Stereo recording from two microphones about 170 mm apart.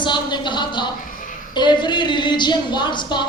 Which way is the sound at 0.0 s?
25° left (ahead or behind).